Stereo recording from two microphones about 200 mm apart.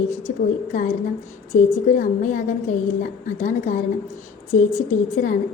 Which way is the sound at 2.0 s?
40° left (ahead or behind).